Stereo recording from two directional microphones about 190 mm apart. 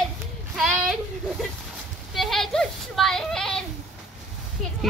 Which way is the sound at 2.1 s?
Centre (ahead or behind).